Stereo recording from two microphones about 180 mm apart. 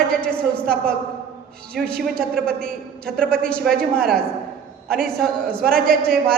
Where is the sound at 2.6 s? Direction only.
5° left (ahead or behind).